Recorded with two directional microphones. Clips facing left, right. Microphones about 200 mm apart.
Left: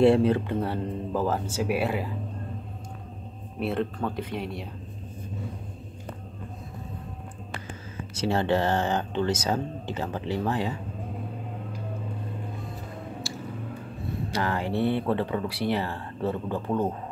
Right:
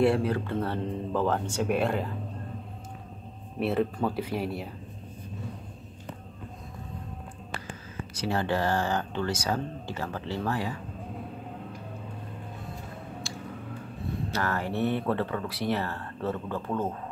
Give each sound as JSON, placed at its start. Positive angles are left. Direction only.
{"t": 0.0, "sound": "speech", "side_deg": 25}
{"t": 3.5, "sound": "speech", "side_deg": 0}
{"t": 8.1, "sound": "speech", "side_deg": 25}
{"t": 13.2, "sound": "a sound", "side_deg": 5}
{"t": 14.3, "sound": "speech", "side_deg": 15}